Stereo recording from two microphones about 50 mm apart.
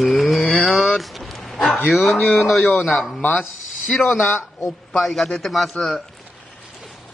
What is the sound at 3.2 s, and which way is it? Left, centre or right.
Speech, left.